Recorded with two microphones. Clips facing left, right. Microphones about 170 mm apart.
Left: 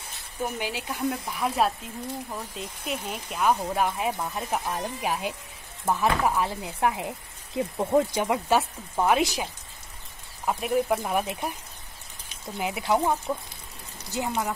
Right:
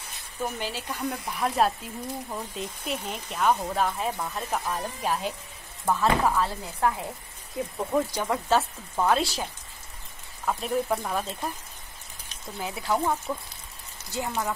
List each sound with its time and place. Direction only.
0.4 s speech: 10° left (ahead or behind)
1.2 s speech: centre (ahead or behind)
12.5 s speech: 20° left (ahead or behind)